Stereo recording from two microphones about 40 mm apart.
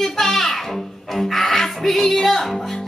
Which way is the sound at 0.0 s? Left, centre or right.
Centre.